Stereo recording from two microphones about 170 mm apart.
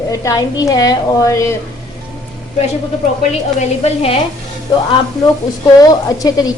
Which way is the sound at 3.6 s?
35° left (ahead or behind).